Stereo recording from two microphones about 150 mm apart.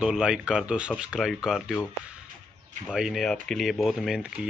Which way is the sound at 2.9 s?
5° right (ahead or behind).